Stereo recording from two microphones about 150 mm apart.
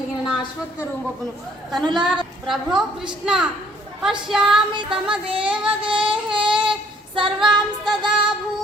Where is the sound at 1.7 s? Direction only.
Centre (ahead or behind).